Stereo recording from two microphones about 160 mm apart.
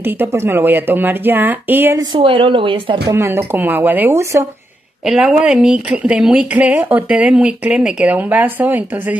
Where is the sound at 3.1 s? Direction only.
15° right (ahead or behind).